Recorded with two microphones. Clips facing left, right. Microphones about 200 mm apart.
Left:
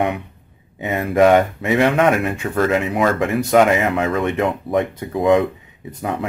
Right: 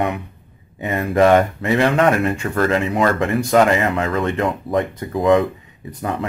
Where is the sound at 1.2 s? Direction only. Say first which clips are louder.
Left 1 dB; 5° left (ahead or behind).